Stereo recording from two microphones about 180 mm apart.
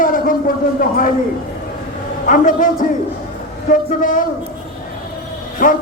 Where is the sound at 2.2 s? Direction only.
45° left (ahead or behind).